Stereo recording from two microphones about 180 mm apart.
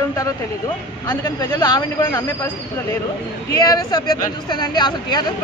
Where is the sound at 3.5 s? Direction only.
20° left (ahead or behind).